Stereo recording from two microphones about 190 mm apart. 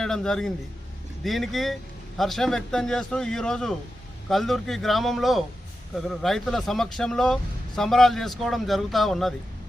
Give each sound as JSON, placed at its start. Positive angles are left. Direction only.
{"t": 0.0, "sound": "a man's voice", "side_deg": 5}